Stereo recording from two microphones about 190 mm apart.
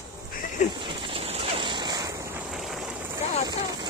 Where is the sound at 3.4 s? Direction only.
20° right (ahead or behind).